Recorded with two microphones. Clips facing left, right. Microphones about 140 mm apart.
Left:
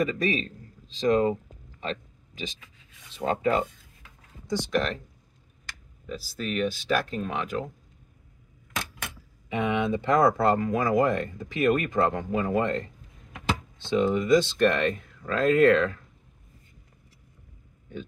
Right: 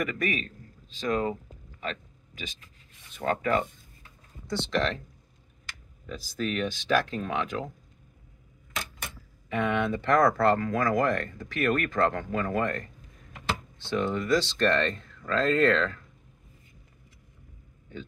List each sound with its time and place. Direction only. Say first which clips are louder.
0.0 s speech: left 4 dB; 25° left (ahead or behind)
1.3 s a sound: left 5 dB; 30° left (ahead or behind)
3.2 s speech: left 2 dB; 20° left (ahead or behind)
4.6 s speech: even; 5° left (ahead or behind)
6.0 s speech: right 1 dB; 5° left (ahead or behind)
8.7 s keys jangling: left 2 dB; 65° left (ahead or behind)
9.5 s speech: left 1 dB; 15° left (ahead or behind)